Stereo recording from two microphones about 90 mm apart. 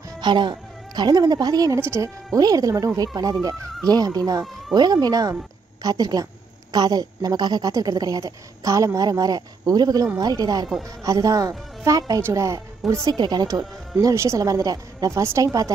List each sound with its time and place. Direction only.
0.2 s speech: 55° right (ahead or behind)
1.8 s speech: 30° right (ahead or behind)
2.3 s speech: 40° right (ahead or behind)
13.1 s speech: 50° right (ahead or behind)